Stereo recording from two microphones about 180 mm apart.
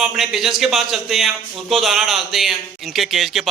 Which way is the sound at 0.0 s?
Centre (ahead or behind).